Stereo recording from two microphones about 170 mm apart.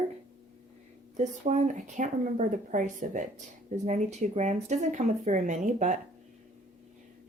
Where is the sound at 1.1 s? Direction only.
45° right (ahead or behind).